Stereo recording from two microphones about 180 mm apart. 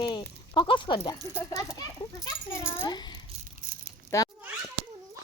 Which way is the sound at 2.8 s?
25° left (ahead or behind).